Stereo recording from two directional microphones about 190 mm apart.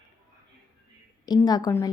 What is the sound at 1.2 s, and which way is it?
Speech, 20° left (ahead or behind).